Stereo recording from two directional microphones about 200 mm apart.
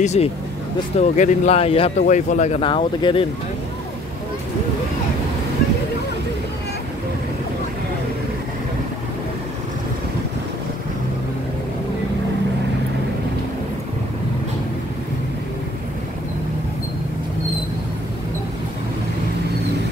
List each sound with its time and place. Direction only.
0.0 s speech: 35° left (ahead or behind)